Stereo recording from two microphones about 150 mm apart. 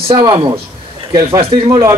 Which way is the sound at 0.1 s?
30° right (ahead or behind).